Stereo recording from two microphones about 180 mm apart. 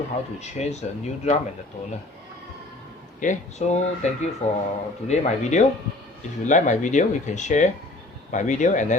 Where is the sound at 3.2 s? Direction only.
40° left (ahead or behind).